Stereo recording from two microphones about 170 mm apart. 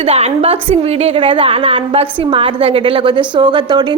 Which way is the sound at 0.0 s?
40° right (ahead or behind).